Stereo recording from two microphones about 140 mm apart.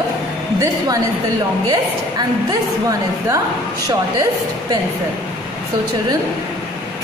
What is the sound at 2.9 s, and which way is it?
Speech, 20° right (ahead or behind).